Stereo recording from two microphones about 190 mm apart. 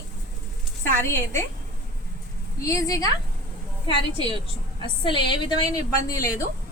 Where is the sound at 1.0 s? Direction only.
15° left (ahead or behind).